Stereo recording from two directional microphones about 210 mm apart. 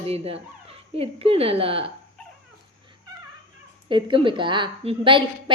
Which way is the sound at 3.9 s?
25° right (ahead or behind).